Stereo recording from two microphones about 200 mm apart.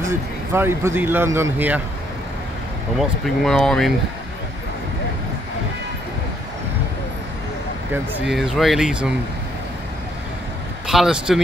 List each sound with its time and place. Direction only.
0.0 s speech: 10° right (ahead or behind)
3.0 s speech: centre (ahead or behind)
7.9 s speech: centre (ahead or behind)
10.9 s speech: 5° right (ahead or behind)